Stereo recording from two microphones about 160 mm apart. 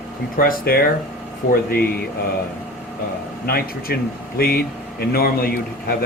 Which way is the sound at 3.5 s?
70° left (ahead or behind).